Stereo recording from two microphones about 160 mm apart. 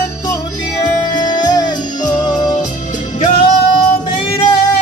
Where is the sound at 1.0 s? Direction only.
25° left (ahead or behind).